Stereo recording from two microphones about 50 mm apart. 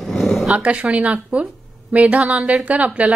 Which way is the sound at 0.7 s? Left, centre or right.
Right.